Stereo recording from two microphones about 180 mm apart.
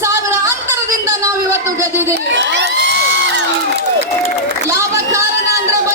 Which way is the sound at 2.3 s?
75° right (ahead or behind).